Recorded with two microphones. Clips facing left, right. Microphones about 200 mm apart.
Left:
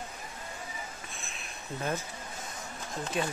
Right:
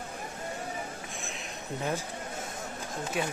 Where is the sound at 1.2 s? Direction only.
15° right (ahead or behind).